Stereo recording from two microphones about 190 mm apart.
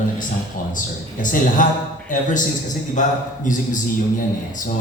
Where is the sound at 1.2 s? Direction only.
45° left (ahead or behind).